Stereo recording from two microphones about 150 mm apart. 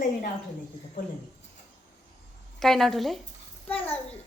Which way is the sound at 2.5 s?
Centre (ahead or behind).